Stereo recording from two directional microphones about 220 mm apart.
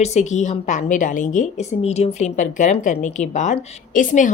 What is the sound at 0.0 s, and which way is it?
A woman's voice, 30° left (ahead or behind).